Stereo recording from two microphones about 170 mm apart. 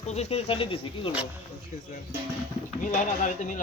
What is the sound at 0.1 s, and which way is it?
Speech, 40° left (ahead or behind).